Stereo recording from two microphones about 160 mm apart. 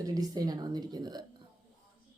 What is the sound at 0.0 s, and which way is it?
Speech, 20° right (ahead or behind).